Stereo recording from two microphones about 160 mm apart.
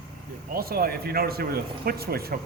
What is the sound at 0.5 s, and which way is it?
Speech, 70° right (ahead or behind).